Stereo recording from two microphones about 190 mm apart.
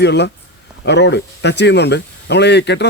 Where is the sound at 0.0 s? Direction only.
65° left (ahead or behind).